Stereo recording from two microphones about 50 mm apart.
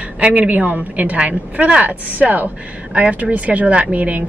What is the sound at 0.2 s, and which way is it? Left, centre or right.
A woman's voice, right.